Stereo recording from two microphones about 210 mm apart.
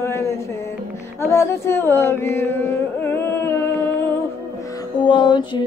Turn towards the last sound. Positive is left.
turn(degrees=20)  # may be behind; listen again after turning